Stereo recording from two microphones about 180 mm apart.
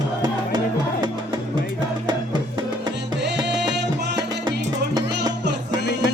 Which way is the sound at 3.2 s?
70° right (ahead or behind).